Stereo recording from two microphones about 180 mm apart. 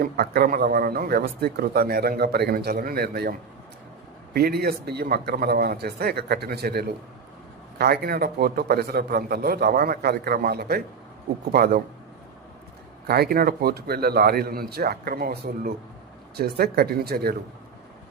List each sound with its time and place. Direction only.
0.0 s speech: 60° right (ahead or behind)
4.4 s speech: 60° right (ahead or behind)
13.1 s speech: 60° right (ahead or behind)